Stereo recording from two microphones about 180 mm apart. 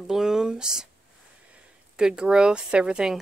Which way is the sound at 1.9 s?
5° right (ahead or behind).